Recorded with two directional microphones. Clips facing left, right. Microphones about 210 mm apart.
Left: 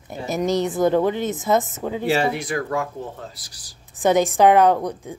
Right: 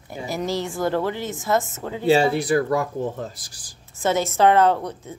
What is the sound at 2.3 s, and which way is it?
Speech, 35° right (ahead or behind).